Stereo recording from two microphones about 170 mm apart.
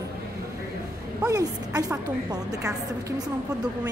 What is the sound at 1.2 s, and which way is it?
A woman's voice, 20° right (ahead or behind).